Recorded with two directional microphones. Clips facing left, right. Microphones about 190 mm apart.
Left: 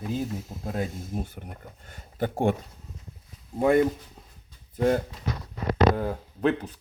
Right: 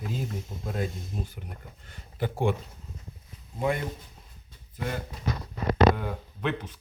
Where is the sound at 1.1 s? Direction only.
50° left (ahead or behind).